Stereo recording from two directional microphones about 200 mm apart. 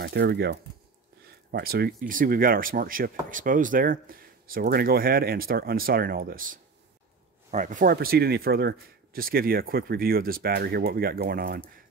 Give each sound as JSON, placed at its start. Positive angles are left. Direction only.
{"t": 0.0, "sound": "speech", "side_deg": -55}